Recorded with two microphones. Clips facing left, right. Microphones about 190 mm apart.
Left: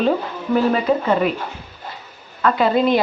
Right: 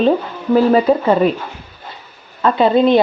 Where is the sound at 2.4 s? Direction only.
25° right (ahead or behind).